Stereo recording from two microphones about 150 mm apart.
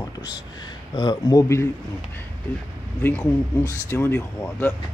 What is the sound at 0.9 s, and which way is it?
Speech, 25° left (ahead or behind).